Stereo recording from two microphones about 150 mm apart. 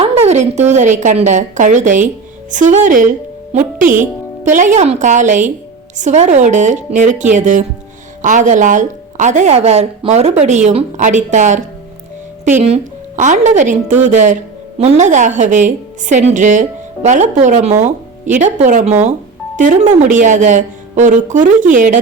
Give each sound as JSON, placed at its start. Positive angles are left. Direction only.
{"t": 0.0, "sound": "a woman's voice", "side_deg": -45}